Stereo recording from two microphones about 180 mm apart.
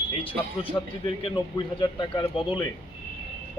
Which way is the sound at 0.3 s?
30° left (ahead or behind).